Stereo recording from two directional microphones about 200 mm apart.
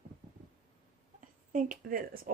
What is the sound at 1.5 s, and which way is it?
Speech, 40° right (ahead or behind).